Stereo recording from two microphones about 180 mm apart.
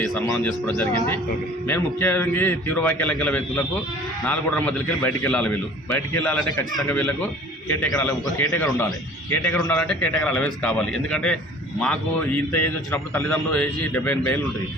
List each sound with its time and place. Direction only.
0.0 s a man's voice: centre (ahead or behind)